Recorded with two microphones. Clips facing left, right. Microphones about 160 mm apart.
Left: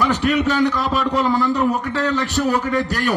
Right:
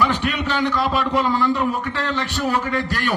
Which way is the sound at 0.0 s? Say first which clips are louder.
Left 4 dB; 40° left (ahead or behind).